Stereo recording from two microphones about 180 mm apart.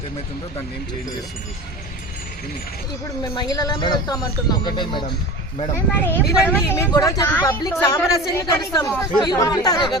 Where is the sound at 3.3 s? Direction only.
20° left (ahead or behind).